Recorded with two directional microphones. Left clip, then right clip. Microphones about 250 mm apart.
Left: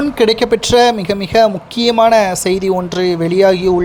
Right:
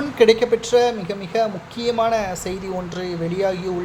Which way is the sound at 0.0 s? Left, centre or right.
Left.